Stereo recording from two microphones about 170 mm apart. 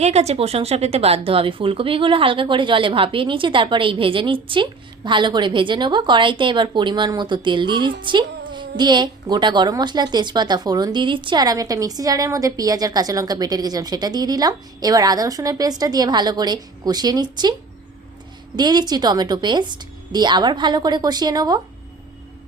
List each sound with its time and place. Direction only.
0.0 s speech: 40° right (ahead or behind)
18.5 s speech: 25° right (ahead or behind)